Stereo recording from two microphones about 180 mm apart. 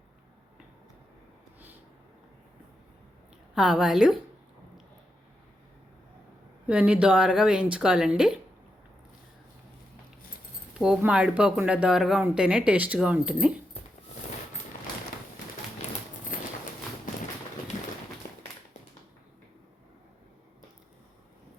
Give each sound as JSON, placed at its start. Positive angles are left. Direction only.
{"t": 3.5, "sound": "speech", "side_deg": -5}
{"t": 6.7, "sound": "speech", "side_deg": -5}
{"t": 10.8, "sound": "speech", "side_deg": -5}
{"t": 16.3, "sound": "a sound", "side_deg": 50}